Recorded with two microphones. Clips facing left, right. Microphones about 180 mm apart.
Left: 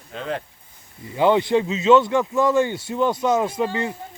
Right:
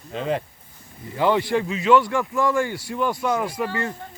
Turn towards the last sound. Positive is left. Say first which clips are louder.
# left 3 dB
turn(degrees=20)  # may be behind; listen again after turning